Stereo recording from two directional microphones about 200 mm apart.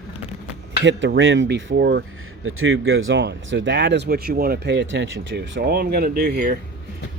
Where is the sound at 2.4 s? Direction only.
80° right.